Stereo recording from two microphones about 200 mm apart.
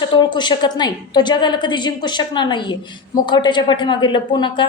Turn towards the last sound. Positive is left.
turn(degrees=25)  # may be behind; listen again after turning